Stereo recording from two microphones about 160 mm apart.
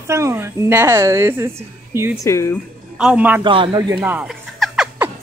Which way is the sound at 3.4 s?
30° right (ahead or behind).